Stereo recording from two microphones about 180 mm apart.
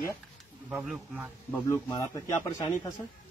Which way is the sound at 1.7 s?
20° left (ahead or behind).